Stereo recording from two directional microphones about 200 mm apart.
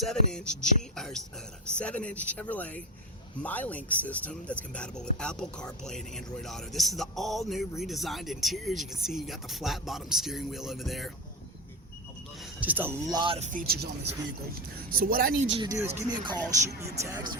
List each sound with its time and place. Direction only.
0.0 s speech: 5° left (ahead or behind)
12.5 s speech: 10° right (ahead or behind)
13.1 s speech: 25° right (ahead or behind)
13.5 s speech: 45° right (ahead or behind)
15.5 s speech: 20° right (ahead or behind)